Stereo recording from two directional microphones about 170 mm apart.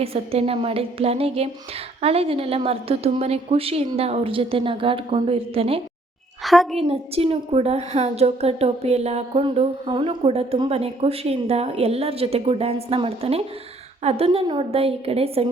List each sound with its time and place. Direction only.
0.0 s a woman's voice: 35° right (ahead or behind)
6.4 s a woman's voice: centre (ahead or behind)
6.7 s a woman's voice: 35° right (ahead or behind)